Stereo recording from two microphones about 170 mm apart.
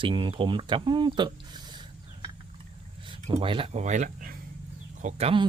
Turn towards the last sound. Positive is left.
turn(degrees=-35)  # may be behind; listen again after turning